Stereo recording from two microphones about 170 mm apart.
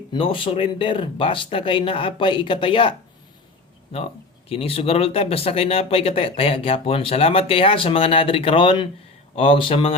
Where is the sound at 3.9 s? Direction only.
35° left (ahead or behind).